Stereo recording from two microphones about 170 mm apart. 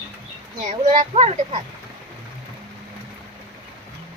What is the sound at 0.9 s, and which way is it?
Speech, 40° right (ahead or behind).